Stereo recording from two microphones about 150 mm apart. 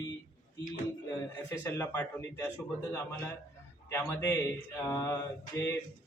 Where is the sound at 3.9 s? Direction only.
20° left (ahead or behind).